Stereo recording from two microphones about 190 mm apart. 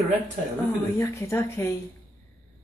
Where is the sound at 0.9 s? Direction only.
15° left (ahead or behind).